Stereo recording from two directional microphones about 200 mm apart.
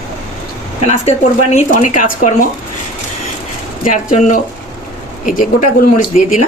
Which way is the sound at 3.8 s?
40° left (ahead or behind).